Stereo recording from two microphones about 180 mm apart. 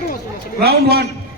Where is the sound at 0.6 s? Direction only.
60° right (ahead or behind).